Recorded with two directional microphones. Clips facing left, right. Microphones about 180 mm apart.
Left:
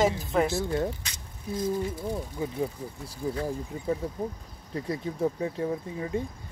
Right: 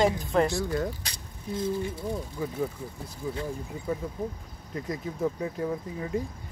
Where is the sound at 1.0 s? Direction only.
35° right (ahead or behind).